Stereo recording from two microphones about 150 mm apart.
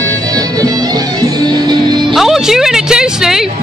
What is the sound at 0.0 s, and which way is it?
Music, 25° right (ahead or behind).